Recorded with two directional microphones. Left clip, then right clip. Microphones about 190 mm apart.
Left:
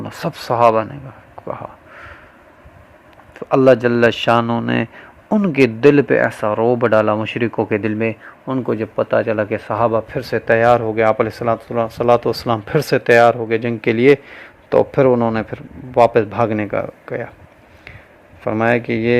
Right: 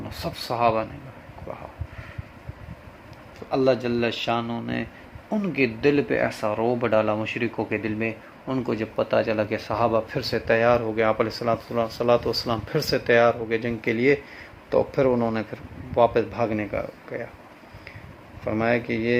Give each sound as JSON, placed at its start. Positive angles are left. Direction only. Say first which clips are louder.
{"t": 0.0, "sound": "speech", "louder": "left 7 dB", "side_deg": 45}
{"t": 1.5, "sound": "a sound", "louder": "left 10 dB", "side_deg": 45}
{"t": 3.5, "sound": "speech", "louder": "left 10 dB", "side_deg": 60}
{"t": 18.4, "sound": "speech", "louder": "left 7 dB", "side_deg": 40}